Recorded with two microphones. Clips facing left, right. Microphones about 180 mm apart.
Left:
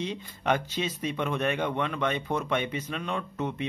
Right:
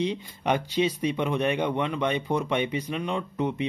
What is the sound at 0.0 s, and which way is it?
Speech, 15° right (ahead or behind).